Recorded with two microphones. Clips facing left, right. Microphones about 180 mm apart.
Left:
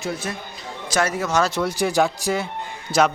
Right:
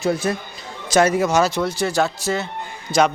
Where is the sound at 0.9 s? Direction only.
20° right (ahead or behind).